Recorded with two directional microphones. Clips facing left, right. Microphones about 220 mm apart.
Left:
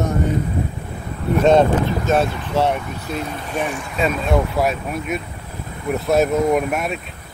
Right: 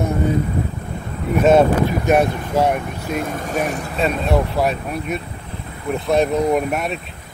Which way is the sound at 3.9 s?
Centre (ahead or behind).